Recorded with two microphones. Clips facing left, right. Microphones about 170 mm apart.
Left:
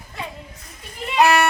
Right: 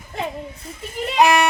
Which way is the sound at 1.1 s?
15° right (ahead or behind).